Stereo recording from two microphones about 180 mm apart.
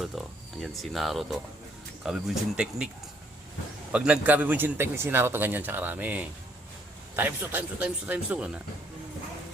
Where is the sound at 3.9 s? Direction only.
5° right (ahead or behind).